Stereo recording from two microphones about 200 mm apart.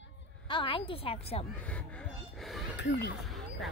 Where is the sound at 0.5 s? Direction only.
25° left (ahead or behind).